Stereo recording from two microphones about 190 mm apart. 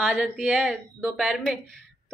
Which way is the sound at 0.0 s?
5° right (ahead or behind).